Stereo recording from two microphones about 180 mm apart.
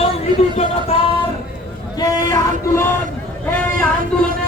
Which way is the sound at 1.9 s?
20° left (ahead or behind).